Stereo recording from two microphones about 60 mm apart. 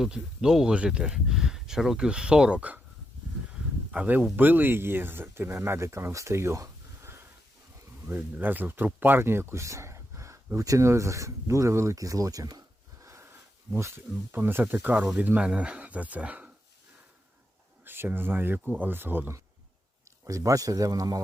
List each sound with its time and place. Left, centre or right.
0.0 s speech: centre
3.9 s speech: right
8.0 s speech: right
9.6 s a sound: right
10.8 s speech: right
13.0 s a sound: right
13.7 s speech: right
15.4 s speech: centre
17.8 s speech: right
20.2 s speech: right